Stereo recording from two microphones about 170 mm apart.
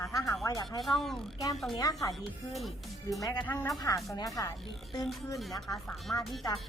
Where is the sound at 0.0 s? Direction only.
20° left (ahead or behind).